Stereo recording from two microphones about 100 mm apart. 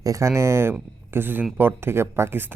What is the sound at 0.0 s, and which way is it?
Speech, 30° right (ahead or behind).